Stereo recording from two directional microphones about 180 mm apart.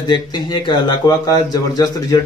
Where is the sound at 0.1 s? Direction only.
25° left (ahead or behind).